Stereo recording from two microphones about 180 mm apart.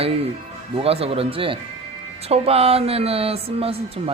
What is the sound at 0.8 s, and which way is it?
Speech, 35° right (ahead or behind).